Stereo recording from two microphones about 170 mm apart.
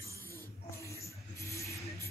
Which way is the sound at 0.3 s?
15° left (ahead or behind).